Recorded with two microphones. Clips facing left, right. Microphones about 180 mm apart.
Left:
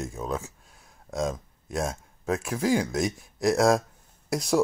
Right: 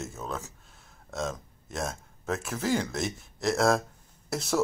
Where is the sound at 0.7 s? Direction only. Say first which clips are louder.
Left 4 dB; 15° left (ahead or behind).